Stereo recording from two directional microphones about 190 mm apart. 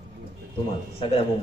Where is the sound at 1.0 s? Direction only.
30° left (ahead or behind).